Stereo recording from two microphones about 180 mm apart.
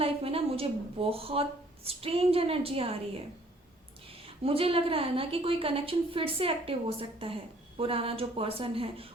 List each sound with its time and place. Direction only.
0.0 s a woman's voice: 30° right (ahead or behind)
4.1 s a woman's voice: 30° right (ahead or behind)